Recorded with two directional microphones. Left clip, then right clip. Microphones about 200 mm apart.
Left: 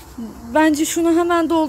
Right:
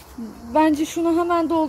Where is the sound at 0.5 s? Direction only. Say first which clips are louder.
Left 3 dB; centre (ahead or behind).